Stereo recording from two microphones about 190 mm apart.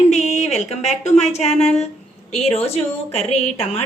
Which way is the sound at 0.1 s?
35° left (ahead or behind).